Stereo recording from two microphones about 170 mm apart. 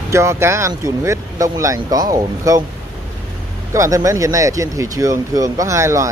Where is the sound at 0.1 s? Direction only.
15° right (ahead or behind).